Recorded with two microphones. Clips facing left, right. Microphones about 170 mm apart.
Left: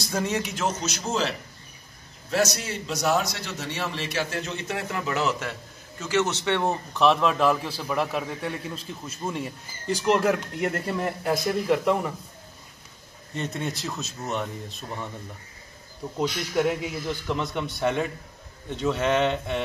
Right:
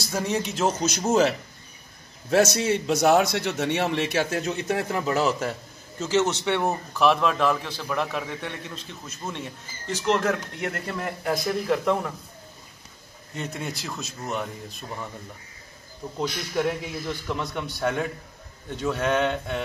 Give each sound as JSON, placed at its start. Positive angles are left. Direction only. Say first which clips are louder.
{"t": 0.0, "sound": "a man's voice", "louder": "even", "side_deg": -10}
{"t": 0.8, "sound": "a man's voice", "louder": "right 6 dB", "side_deg": -45}
{"t": 2.3, "sound": "a man's voice", "louder": "right 5 dB", "side_deg": -55}
{"t": 5.9, "sound": "a man's voice", "louder": "right 2 dB", "side_deg": -20}
{"t": 13.4, "sound": "a man's voice", "louder": "left 2 dB", "side_deg": 0}
{"t": 16.2, "sound": "a man's voice", "louder": "left 2 dB", "side_deg": 5}